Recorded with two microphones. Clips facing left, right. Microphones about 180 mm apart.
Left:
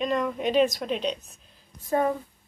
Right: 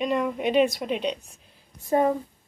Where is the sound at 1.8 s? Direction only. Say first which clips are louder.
Right 3 dB; 25° right (ahead or behind).